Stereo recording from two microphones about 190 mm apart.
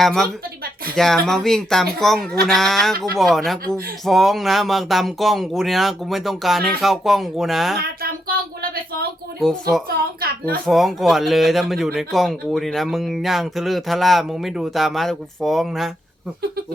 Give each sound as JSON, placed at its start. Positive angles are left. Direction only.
{"t": 0.0, "sound": "a man's voice", "side_deg": 0}
{"t": 9.4, "sound": "a man's voice", "side_deg": 5}
{"t": 10.0, "sound": "a child's voice", "side_deg": -50}
{"t": 10.7, "sound": "a man's voice", "side_deg": 0}